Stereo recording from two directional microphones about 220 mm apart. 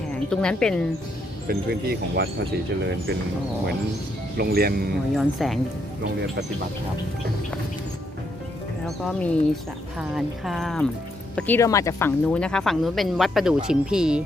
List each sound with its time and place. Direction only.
0.1 s a woman's voice: 5° left (ahead or behind)
1.5 s speech: 45° right (ahead or behind)
4.4 s speech: 45° right (ahead or behind)
5.1 s speech: centre (ahead or behind)
9.0 s speech: 5° left (ahead or behind)